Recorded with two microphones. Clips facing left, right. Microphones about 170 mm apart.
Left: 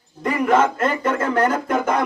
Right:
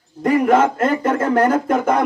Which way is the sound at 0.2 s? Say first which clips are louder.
Right 3 dB; 45° right (ahead or behind).